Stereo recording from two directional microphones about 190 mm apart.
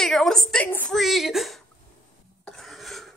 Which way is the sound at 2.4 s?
Centre (ahead or behind).